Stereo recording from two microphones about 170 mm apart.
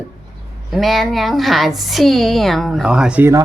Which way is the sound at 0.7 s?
Centre (ahead or behind).